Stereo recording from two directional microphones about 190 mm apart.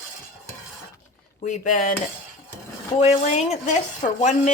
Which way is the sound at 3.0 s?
40° left (ahead or behind).